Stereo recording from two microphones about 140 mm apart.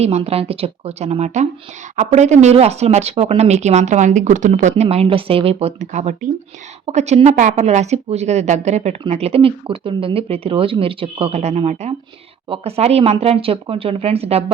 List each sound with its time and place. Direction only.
0.0 s speech: 45° right (ahead or behind)